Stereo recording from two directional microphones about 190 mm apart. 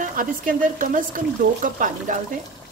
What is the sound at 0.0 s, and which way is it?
Speech, 45° right (ahead or behind).